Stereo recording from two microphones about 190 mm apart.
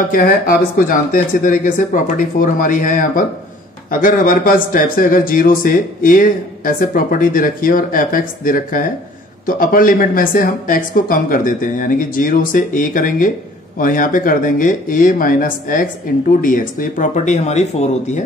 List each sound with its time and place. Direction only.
0.1 s a man's voice: 50° left (ahead or behind)